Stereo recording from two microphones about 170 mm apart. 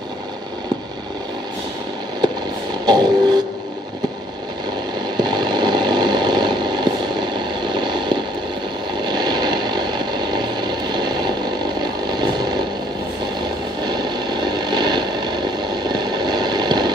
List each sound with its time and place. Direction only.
2.8 s vehicle: 25° right (ahead or behind)
5.1 s vehicle: 25° right (ahead or behind)
9.0 s a sound: 25° right (ahead or behind)
11.8 s vehicle: 25° right (ahead or behind)
13.8 s vehicle: 25° right (ahead or behind)